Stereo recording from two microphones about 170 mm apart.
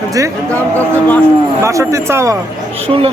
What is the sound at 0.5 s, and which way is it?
Speech, 10° left (ahead or behind).